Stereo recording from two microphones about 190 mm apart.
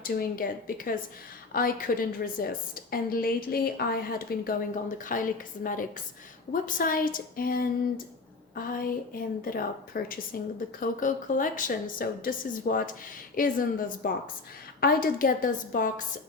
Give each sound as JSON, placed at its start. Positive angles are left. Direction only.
{"t": 0.0, "sound": "a woman's voice", "side_deg": 50}
{"t": 1.5, "sound": "a woman's voice", "side_deg": 50}